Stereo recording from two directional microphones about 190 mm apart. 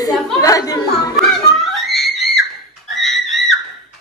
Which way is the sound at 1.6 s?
Centre (ahead or behind).